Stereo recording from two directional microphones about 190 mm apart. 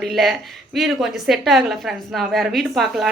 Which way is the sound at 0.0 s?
Centre (ahead or behind).